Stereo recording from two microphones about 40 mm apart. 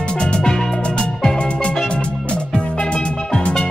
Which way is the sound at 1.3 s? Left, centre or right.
Left.